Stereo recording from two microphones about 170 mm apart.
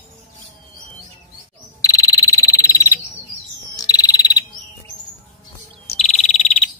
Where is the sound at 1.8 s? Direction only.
20° left (ahead or behind).